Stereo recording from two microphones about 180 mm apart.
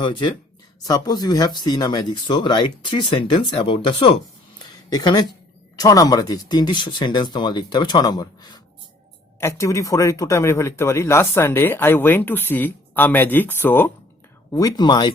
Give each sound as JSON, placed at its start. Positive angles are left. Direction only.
{"t": 0.0, "sound": "speech", "side_deg": 25}
{"t": 14.5, "sound": "speech", "side_deg": 20}